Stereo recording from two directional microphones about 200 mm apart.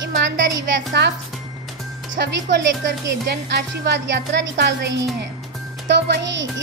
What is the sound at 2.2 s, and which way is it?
Speech, 55° right (ahead or behind).